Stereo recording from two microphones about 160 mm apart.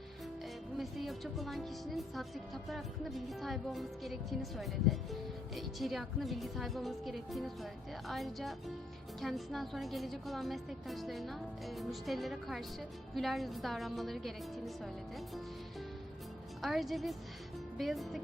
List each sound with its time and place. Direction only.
0.8 s speech: centre (ahead or behind)
16.6 s speech: centre (ahead or behind)